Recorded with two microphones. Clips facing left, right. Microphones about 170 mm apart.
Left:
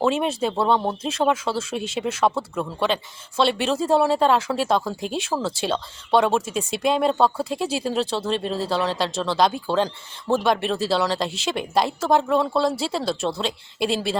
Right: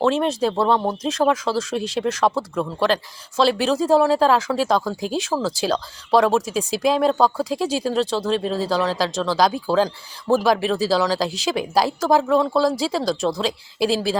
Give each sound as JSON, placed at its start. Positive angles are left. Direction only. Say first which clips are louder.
{"t": 0.0, "sound": "speech", "louder": "right 2 dB", "side_deg": 5}